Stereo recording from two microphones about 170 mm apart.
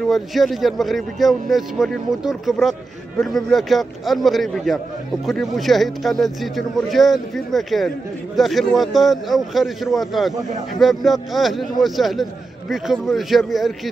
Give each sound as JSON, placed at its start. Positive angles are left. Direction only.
{"t": 0.1, "sound": "a man's voice", "side_deg": 0}